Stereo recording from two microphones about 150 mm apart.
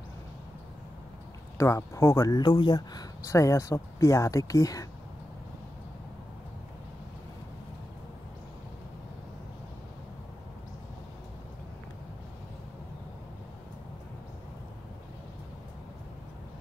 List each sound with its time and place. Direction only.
1.6 s speech: 20° left (ahead or behind)